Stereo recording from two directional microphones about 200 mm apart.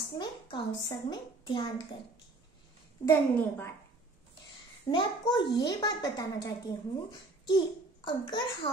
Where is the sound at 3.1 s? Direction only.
10° left (ahead or behind).